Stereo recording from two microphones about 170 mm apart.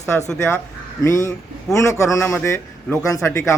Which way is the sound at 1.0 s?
15° left (ahead or behind).